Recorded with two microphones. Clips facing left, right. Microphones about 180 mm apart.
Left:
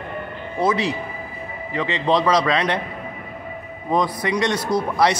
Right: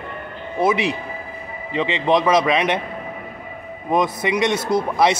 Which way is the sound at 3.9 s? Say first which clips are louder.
Right 1 dB; 20° right (ahead or behind).